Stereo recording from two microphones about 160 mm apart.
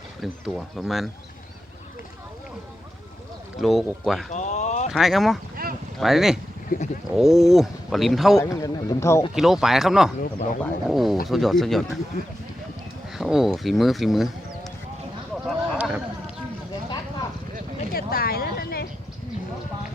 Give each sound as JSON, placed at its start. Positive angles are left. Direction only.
{"t": 0.2, "sound": "speech", "side_deg": -5}
{"t": 3.6, "sound": "speech", "side_deg": 0}
{"t": 4.3, "sound": "speech", "side_deg": 50}
{"t": 4.9, "sound": "speech", "side_deg": 0}
{"t": 5.6, "sound": "boat", "side_deg": -65}
{"t": 6.0, "sound": "speech", "side_deg": 0}
{"t": 6.7, "sound": "speech", "side_deg": 55}
{"t": 7.1, "sound": "speech", "side_deg": 0}
{"t": 8.4, "sound": "a man's voice", "side_deg": 20}
{"t": 9.3, "sound": "speech", "side_deg": 0}
{"t": 13.1, "sound": "speech", "side_deg": 0}
{"t": 15.4, "sound": "a sound", "side_deg": -5}
{"t": 17.9, "sound": "a sound", "side_deg": 70}